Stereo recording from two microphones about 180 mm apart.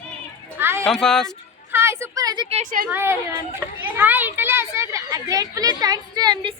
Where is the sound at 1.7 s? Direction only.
15° right (ahead or behind).